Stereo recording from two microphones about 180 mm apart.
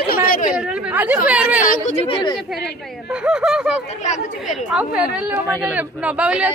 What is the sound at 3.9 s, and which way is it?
Speech, 40° left (ahead or behind).